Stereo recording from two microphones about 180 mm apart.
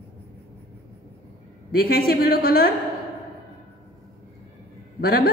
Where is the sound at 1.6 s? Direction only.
55° left (ahead or behind).